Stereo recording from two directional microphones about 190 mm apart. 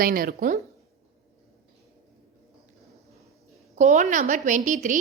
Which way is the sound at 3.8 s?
40° right (ahead or behind).